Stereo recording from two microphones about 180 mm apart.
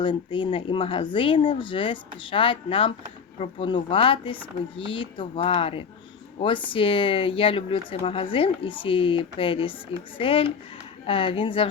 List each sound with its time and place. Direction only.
0.0 s speech: 25° left (ahead or behind)